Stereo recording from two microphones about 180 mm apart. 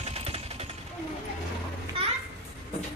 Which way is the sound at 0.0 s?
35° right (ahead or behind).